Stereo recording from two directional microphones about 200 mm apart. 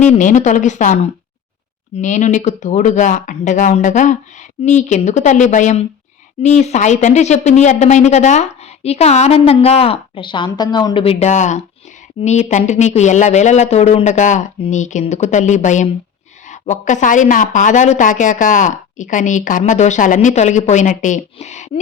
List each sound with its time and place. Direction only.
0.0 s speech: 35° left (ahead or behind)
2.0 s speech: 35° left (ahead or behind)